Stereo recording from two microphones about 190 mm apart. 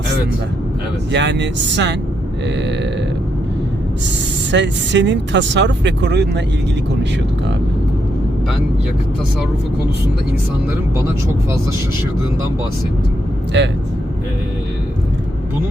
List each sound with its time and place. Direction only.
1.1 s speech: 70° right (ahead or behind)
4.5 s speech: 70° right (ahead or behind)
13.5 s speech: 70° right (ahead or behind)